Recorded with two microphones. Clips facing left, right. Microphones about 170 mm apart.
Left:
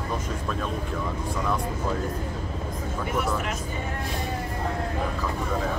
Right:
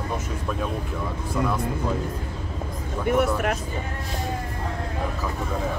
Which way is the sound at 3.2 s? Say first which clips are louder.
Right 5 dB; 60° right (ahead or behind).